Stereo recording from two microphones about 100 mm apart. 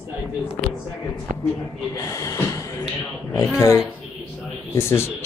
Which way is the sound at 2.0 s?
35° left (ahead or behind).